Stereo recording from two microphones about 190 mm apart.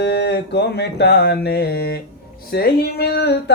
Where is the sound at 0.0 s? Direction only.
60° left (ahead or behind).